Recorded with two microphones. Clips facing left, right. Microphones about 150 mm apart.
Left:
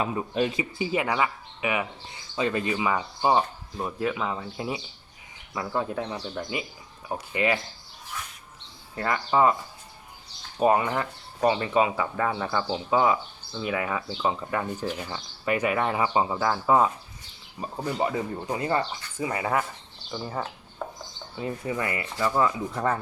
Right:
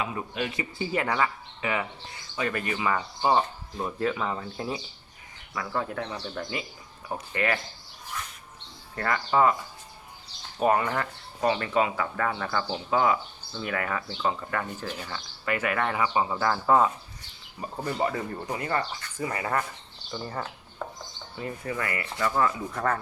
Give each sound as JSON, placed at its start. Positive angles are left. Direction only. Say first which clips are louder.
{"t": 0.0, "sound": "speech", "louder": "left 5 dB", "side_deg": 30}
{"t": 0.5, "sound": "speech", "louder": "left 2 dB", "side_deg": 15}
{"t": 2.3, "sound": "speech", "louder": "left 3 dB", "side_deg": 20}
{"t": 5.5, "sound": "speech", "louder": "left 2 dB", "side_deg": 20}
{"t": 9.0, "sound": "speech", "louder": "left 1 dB", "side_deg": 20}
{"t": 10.6, "sound": "speech", "louder": "left 2 dB", "side_deg": 15}
{"t": 16.4, "sound": "speech", "louder": "right 1 dB", "side_deg": 10}